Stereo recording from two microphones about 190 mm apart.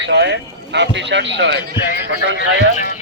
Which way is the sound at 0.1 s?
60° right (ahead or behind).